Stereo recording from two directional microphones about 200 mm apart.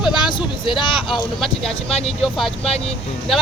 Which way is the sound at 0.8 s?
25° left (ahead or behind).